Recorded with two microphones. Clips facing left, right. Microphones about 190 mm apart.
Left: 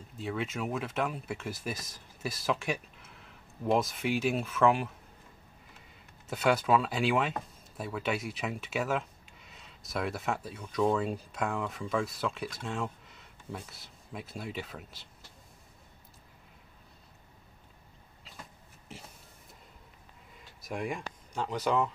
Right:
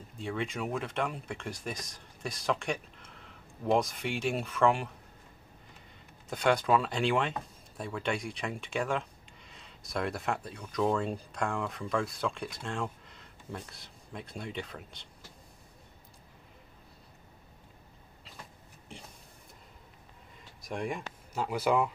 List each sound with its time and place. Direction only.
0.2 s speech: 5° left (ahead or behind)
6.2 s speech: 5° left (ahead or behind)
18.9 s a sound: 5° left (ahead or behind)
20.6 s speech: centre (ahead or behind)